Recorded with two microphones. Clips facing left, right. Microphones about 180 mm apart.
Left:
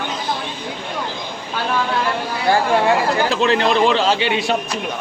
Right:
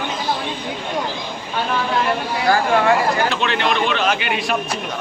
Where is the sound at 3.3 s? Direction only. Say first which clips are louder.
Left 4 dB; 35° left (ahead or behind).